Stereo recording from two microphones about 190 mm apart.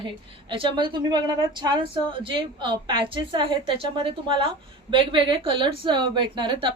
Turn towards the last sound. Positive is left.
turn(degrees=-25)  # may be behind; listen again after turning